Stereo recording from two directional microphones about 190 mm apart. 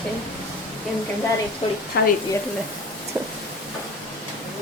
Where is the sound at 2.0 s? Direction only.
60° left (ahead or behind).